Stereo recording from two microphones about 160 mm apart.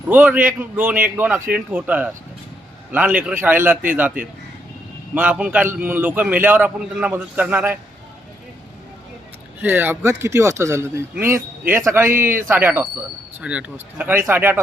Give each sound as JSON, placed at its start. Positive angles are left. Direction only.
{"t": 0.1, "sound": "a man's voice", "side_deg": -10}
{"t": 5.1, "sound": "a man's voice", "side_deg": -10}
{"t": 9.6, "sound": "a man's voice", "side_deg": -15}